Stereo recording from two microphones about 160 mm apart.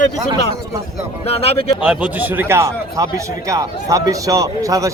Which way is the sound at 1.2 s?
40° left (ahead or behind).